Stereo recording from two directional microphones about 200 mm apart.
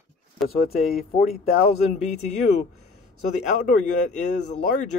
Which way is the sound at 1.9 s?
35° left (ahead or behind).